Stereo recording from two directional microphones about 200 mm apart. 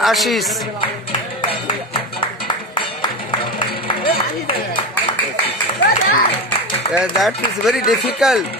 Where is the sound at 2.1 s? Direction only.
25° left (ahead or behind).